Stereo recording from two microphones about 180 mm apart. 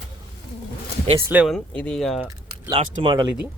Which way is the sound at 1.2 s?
5° right (ahead or behind).